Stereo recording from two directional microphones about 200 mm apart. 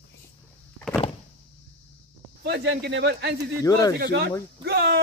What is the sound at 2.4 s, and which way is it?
Speech, 55° right (ahead or behind).